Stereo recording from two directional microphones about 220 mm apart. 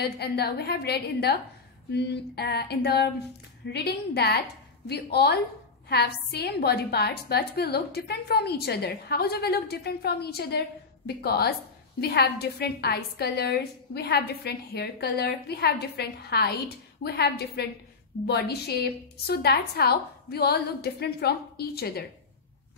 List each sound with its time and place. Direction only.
0.0 s a woman's voice: 45° left (ahead or behind)